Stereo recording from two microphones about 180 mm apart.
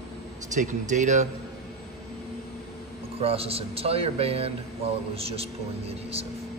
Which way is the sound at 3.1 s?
30° right (ahead or behind).